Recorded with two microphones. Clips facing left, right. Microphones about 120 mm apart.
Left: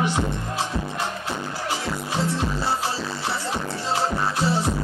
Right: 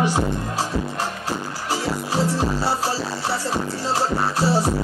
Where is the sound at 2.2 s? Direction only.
40° right (ahead or behind).